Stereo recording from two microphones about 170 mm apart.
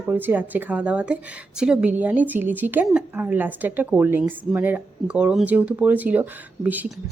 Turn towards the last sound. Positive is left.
turn(degrees=-10)  # may be behind; listen again after turning